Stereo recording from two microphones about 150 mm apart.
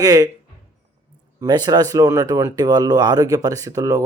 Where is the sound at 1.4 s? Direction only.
25° right (ahead or behind).